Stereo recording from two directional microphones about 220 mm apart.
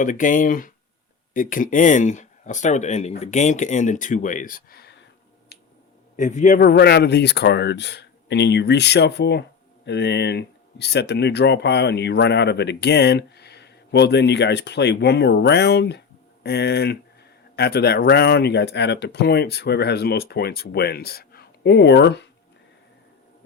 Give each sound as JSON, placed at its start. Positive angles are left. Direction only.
{"t": 0.0, "sound": "speech", "side_deg": 35}
{"t": 6.1, "sound": "speech", "side_deg": 35}